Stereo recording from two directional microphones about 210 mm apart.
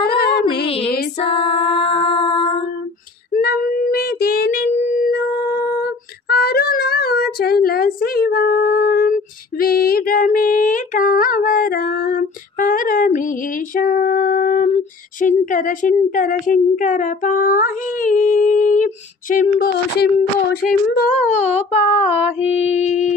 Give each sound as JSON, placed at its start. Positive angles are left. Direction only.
{"t": 0.2, "sound": "music", "side_deg": 50}
{"t": 1.3, "sound": "music", "side_deg": 25}
{"t": 3.3, "sound": "child singing", "side_deg": 45}
{"t": 5.1, "sound": "a sound", "side_deg": 50}
{"t": 9.6, "sound": "female singing", "side_deg": 45}
{"t": 19.3, "sound": "speech", "side_deg": 45}
{"t": 20.6, "sound": "a sound", "side_deg": 40}